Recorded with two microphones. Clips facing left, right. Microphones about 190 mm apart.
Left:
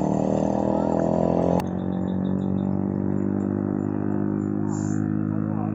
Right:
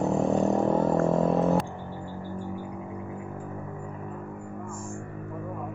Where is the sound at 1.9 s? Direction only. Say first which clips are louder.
Left 12 dB; 50° left (ahead or behind); by 5.7 s 65° left (ahead or behind).